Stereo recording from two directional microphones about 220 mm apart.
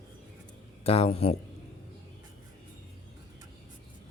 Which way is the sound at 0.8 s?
25° left (ahead or behind).